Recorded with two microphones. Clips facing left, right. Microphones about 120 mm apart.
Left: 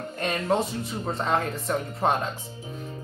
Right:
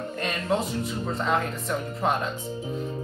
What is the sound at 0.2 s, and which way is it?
Music, 30° left (ahead or behind).